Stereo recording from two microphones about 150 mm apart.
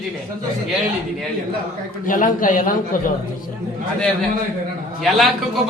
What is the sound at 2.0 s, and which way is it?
A man's voice, 65° left (ahead or behind).